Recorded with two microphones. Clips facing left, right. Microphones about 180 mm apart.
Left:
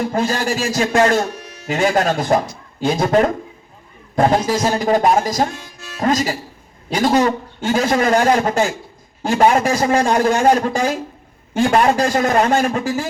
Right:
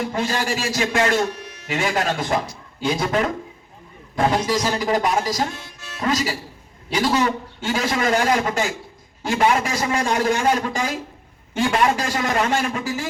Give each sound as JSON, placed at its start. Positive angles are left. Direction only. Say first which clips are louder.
{"t": 0.0, "sound": "a man's voice", "louder": "left 4 dB", "side_deg": 45}